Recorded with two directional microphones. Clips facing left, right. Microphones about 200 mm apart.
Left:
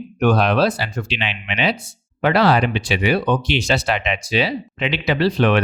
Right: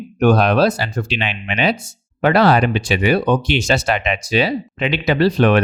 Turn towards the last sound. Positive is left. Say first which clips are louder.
# right 3 dB
turn(degrees=-45)  # may be behind; listen again after turning